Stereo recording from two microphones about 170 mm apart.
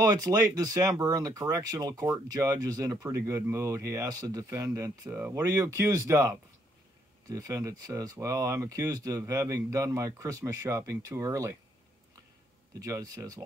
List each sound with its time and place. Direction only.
0.0 s speech: 20° right (ahead or behind)
12.7 s speech: 20° right (ahead or behind)